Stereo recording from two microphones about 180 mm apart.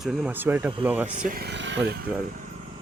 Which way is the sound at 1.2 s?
60° right (ahead or behind).